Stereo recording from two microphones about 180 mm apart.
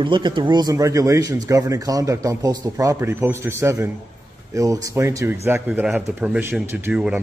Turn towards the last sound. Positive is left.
turn(degrees=-10)  # may be behind; listen again after turning